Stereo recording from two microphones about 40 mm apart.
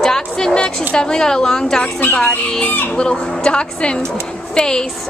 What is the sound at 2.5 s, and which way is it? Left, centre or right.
A woman's voice, left.